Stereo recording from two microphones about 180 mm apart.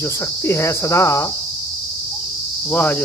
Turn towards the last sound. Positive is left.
turn(degrees=10)  # may be behind; listen again after turning